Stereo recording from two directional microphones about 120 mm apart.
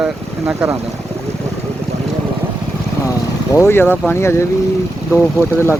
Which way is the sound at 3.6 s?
20° left (ahead or behind).